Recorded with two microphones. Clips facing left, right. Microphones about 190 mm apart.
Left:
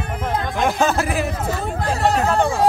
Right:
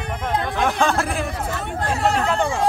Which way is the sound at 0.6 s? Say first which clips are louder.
Left 2 dB; 5° left (ahead or behind).